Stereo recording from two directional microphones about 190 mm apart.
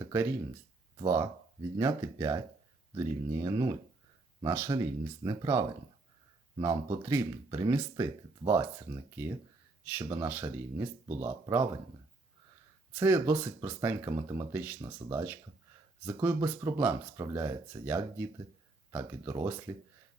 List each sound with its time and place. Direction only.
0.0 s speech: 15° right (ahead or behind)
13.0 s speech: 10° right (ahead or behind)